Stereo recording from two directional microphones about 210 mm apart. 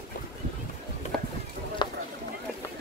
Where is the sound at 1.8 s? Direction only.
20° left (ahead or behind).